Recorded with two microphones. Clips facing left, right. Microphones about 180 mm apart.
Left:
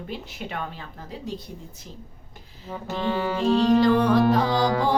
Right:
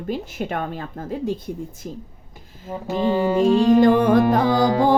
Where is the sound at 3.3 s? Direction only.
50° right (ahead or behind).